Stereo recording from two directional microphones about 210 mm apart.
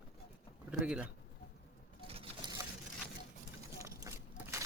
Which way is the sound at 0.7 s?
5° right (ahead or behind).